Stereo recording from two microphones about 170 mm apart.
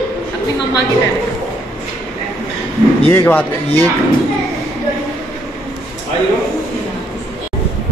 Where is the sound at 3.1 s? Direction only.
10° left (ahead or behind).